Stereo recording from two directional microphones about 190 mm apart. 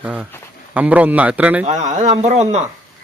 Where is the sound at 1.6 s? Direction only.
40° right (ahead or behind).